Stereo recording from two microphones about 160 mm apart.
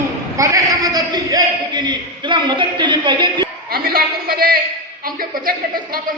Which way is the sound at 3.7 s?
70° right (ahead or behind).